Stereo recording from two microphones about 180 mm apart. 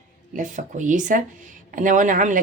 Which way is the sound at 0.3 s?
45° right (ahead or behind).